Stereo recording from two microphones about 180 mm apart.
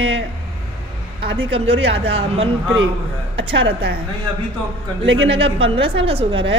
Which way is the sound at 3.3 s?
90° right.